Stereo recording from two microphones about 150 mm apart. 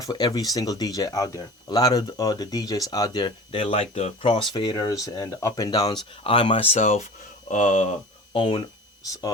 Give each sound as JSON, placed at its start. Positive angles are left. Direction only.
{"t": 0.0, "sound": "speech", "side_deg": 25}
{"t": 8.3, "sound": "speech", "side_deg": 35}